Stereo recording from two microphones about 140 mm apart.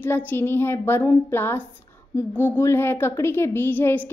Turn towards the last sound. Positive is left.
turn(degrees=15)  # may be behind; listen again after turning